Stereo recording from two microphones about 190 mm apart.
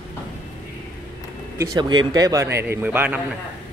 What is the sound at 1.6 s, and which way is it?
Speech, 20° right (ahead or behind).